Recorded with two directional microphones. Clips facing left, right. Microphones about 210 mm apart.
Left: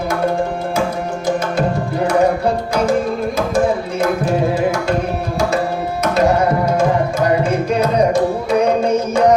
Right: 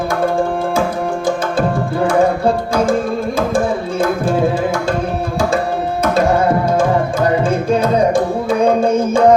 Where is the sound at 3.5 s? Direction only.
30° right (ahead or behind).